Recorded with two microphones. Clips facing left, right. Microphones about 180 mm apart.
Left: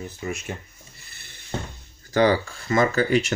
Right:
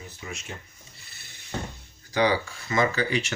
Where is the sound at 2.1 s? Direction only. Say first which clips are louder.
Left 4 dB; 50° left (ahead or behind).